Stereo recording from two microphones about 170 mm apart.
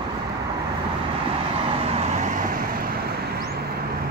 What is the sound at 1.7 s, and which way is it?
Vehicle, 35° right (ahead or behind).